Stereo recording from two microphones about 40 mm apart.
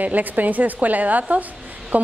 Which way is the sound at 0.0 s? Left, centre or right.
Right.